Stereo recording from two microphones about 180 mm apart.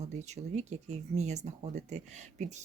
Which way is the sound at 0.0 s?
40° right (ahead or behind).